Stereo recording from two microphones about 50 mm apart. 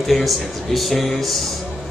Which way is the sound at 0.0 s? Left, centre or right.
Centre.